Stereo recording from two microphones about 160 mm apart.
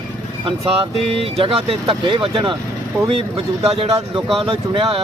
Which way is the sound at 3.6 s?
40° right (ahead or behind).